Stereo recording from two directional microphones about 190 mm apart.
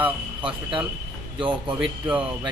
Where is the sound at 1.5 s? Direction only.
5° right (ahead or behind).